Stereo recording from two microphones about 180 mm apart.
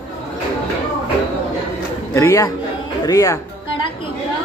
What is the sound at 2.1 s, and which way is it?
A man's voice, 15° left (ahead or behind).